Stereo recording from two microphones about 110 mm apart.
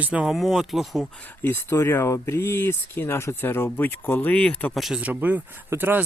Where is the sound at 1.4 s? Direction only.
20° left (ahead or behind).